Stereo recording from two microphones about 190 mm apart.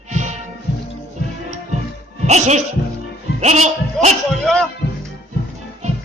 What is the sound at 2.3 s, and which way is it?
Music, 35° right (ahead or behind).